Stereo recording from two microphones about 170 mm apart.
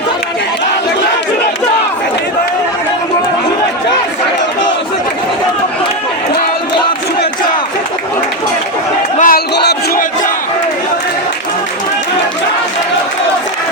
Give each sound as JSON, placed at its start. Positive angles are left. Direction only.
{"t": 9.1, "sound": "crowd", "side_deg": 55}
{"t": 9.6, "sound": "crowd", "side_deg": 80}